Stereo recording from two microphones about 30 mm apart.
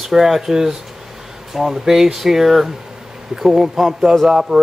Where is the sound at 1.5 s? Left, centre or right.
Centre.